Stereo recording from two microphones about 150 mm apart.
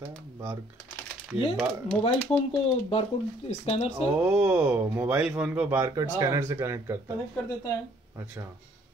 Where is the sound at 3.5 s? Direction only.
45° left (ahead or behind).